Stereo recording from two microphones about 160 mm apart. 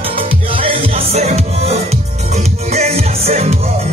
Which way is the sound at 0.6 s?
35° right (ahead or behind).